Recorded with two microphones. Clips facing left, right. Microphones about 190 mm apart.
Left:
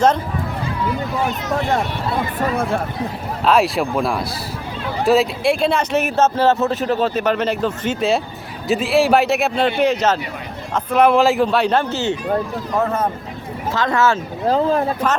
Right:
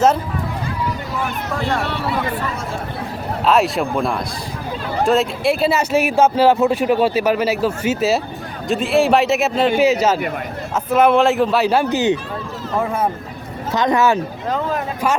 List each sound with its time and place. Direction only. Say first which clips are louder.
3.4 s a man's voice: even; centre (ahead or behind); by 14.2 s 15° right (ahead or behind)
14.4 s speech: left 9 dB; 30° left (ahead or behind)